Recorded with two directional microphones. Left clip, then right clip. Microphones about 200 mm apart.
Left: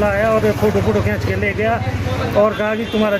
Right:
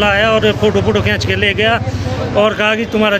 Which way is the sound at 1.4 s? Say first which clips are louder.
Right 5 dB; 20° right (ahead or behind).